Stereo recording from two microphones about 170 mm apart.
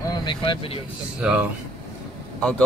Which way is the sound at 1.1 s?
5° right (ahead or behind).